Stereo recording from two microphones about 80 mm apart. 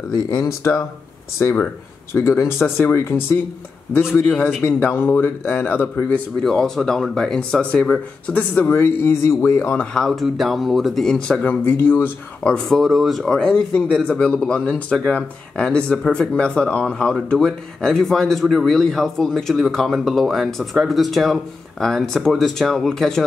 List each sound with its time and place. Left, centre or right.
0.5 s speech: left
1.4 s a man's voice: left
4.1 s a man's voice: centre
6.4 s speech: centre
8.6 s speech: left
9.9 s speech: centre
11.6 s a man's voice: left
12.4 s speech: centre